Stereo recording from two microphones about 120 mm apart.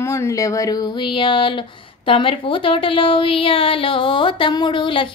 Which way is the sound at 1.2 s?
45° left (ahead or behind).